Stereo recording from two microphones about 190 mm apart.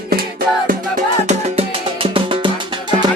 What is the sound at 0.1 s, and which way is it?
Music, 50° right (ahead or behind).